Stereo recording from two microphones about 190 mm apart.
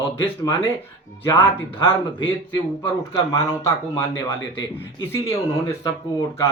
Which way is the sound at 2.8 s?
25° left (ahead or behind).